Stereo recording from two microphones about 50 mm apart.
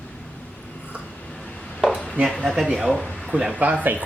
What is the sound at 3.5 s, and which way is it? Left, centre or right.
Speech, right.